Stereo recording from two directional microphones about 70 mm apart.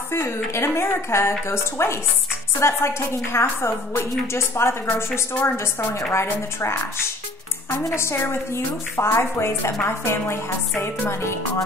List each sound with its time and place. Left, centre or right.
0.1 s a woman's voice: left